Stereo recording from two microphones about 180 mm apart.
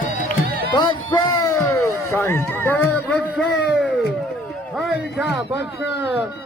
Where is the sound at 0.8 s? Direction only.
25° left (ahead or behind); by 3.4 s 5° left (ahead or behind).